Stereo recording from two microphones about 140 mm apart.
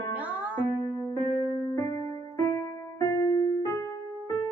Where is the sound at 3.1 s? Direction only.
25° left (ahead or behind).